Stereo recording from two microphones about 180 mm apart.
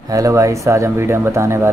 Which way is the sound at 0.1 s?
20° right (ahead or behind).